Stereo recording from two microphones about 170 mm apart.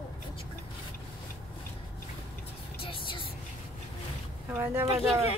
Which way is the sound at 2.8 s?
30° left (ahead or behind).